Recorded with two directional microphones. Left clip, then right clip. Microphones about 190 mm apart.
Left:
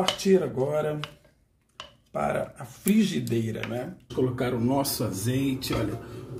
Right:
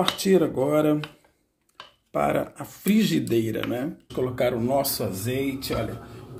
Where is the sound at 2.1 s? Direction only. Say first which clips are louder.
Right 4 dB; 45° right (ahead or behind).